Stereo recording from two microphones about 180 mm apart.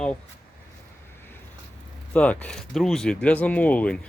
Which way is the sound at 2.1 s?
5° left (ahead or behind).